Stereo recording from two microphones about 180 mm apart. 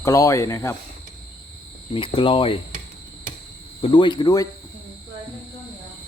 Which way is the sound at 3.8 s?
25° left (ahead or behind).